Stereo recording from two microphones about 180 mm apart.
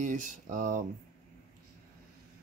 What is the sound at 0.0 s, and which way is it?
Speech, 45° right (ahead or behind).